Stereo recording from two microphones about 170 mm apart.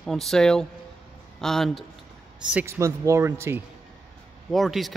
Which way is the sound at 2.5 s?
10° right (ahead or behind).